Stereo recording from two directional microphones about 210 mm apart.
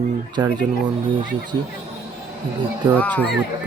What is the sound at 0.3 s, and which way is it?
Speech, 20° right (ahead or behind).